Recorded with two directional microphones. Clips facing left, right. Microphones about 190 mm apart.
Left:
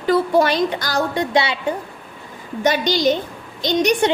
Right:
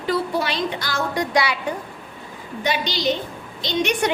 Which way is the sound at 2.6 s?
45° left (ahead or behind).